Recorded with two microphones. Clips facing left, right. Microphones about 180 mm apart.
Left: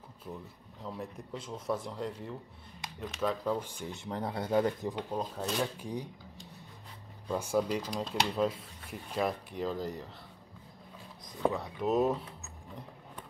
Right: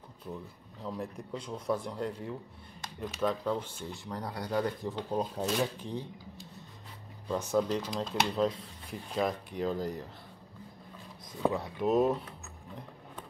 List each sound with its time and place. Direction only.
0.8 s speech: centre (ahead or behind)
3.5 s speech: 15° left (ahead or behind)
5.1 s speech: 5° right (ahead or behind)
5.8 s speech: 10° left (ahead or behind)
7.2 s speech: 10° left (ahead or behind)
11.5 s speech: centre (ahead or behind)